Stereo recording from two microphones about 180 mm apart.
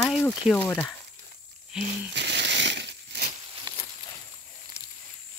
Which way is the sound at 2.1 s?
75° right (ahead or behind).